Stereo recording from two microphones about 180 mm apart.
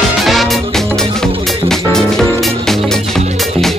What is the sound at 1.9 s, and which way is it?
Music, 5° left (ahead or behind).